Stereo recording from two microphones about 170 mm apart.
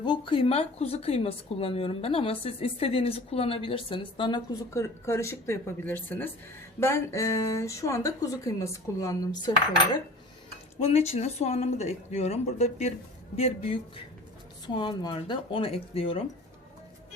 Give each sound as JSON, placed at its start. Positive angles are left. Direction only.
{"t": 0.0, "sound": "a woman's voice", "side_deg": 30}
{"t": 4.7, "sound": "speech", "side_deg": 15}
{"t": 10.8, "sound": "a woman's voice", "side_deg": 40}